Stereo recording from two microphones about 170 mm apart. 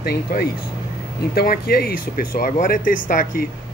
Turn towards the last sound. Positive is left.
turn(degrees=55)  # may be behind; listen again after turning